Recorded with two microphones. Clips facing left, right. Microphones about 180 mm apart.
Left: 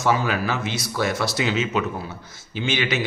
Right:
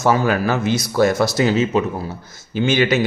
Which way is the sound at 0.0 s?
45° right (ahead or behind).